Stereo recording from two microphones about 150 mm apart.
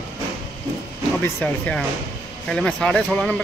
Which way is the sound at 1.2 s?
10° left (ahead or behind).